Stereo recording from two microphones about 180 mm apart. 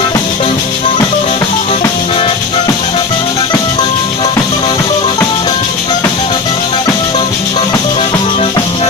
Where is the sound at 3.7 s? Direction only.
25° left (ahead or behind).